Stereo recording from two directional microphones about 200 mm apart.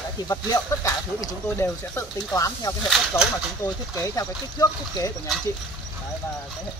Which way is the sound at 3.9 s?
15° left (ahead or behind).